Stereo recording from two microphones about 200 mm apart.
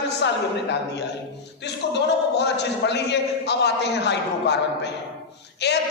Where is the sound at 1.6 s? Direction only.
60° left (ahead or behind).